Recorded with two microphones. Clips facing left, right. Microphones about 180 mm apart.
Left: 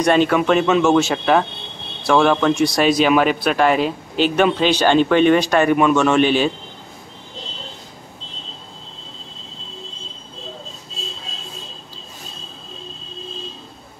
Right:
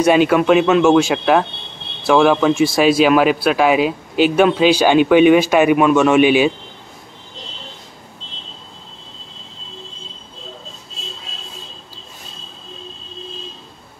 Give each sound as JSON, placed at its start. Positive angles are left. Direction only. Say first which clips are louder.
{"t": 0.0, "sound": "speech", "louder": "right 3 dB", "side_deg": -5}